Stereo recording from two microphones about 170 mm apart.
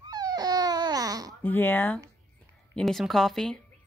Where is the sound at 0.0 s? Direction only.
25° right (ahead or behind).